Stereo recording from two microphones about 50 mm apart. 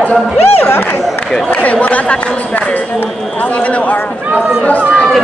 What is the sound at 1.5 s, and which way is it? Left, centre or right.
Speech, left.